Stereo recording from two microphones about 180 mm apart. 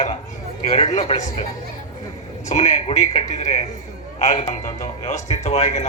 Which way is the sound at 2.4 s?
40° left (ahead or behind).